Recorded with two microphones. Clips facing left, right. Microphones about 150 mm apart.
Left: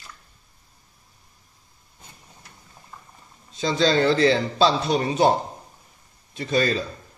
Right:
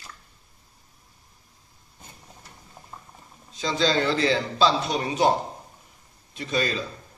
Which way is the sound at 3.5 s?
35° left (ahead or behind).